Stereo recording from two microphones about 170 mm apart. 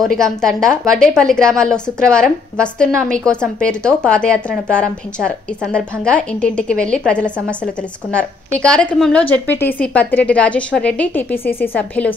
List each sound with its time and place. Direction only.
0.0 s a woman's voice: 5° left (ahead or behind)
8.6 s a woman's voice: 5° left (ahead or behind)